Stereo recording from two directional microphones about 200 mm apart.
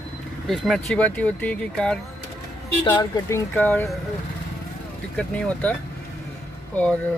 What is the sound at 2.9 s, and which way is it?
Speech, 20° left (ahead or behind).